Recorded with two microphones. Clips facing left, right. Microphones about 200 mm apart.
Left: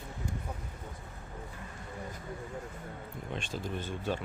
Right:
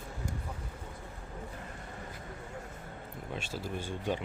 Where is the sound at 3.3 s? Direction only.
5° right (ahead or behind).